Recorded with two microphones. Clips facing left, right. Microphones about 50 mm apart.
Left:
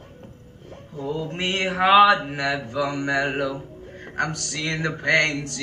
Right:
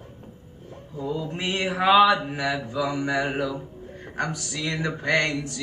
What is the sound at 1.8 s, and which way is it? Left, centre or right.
Speech, left.